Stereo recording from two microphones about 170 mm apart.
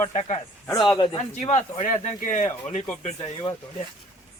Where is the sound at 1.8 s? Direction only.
45° left (ahead or behind).